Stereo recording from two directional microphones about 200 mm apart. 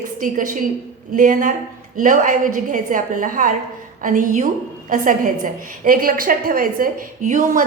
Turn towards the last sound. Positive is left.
turn(degrees=-40)  # may be behind; listen again after turning